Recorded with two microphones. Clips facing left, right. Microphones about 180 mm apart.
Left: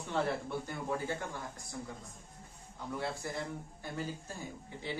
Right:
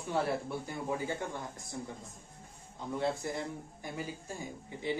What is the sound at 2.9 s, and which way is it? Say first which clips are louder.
Speech: right 5 dB; 20° right (ahead or behind).